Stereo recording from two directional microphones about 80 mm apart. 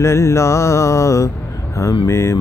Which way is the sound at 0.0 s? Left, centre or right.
Left.